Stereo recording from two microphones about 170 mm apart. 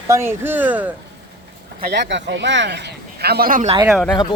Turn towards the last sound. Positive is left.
turn(degrees=5)  # may be behind; listen again after turning